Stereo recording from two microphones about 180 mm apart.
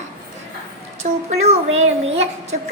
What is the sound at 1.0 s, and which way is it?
Child singing, 40° right (ahead or behind).